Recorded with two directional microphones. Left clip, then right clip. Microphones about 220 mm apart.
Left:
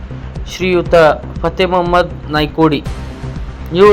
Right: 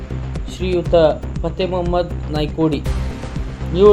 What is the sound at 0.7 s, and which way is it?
Speech, 5° left (ahead or behind).